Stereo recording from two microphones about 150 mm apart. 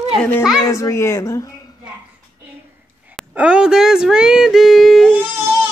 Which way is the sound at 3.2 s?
5° right (ahead or behind).